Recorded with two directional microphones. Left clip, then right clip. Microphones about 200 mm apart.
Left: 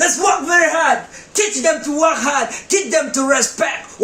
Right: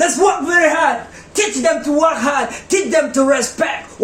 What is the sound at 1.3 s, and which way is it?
Speech, 20° left (ahead or behind).